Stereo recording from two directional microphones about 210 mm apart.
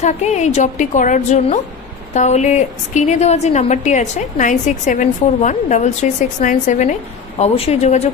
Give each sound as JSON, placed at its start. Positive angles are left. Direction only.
{"t": 0.0, "sound": "a woman's voice", "side_deg": 35}